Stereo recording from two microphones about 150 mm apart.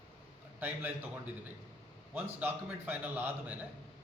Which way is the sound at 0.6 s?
15° right (ahead or behind).